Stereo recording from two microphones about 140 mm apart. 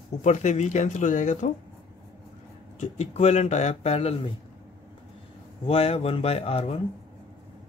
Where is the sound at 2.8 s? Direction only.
50° left (ahead or behind).